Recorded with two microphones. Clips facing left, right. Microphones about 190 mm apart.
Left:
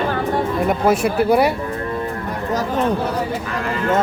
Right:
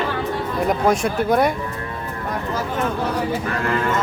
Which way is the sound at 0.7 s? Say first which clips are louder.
Even; 5° left (ahead or behind).